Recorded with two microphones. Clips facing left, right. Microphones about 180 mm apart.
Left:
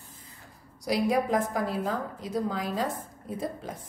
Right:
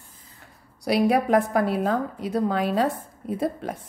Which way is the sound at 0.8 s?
65° right (ahead or behind).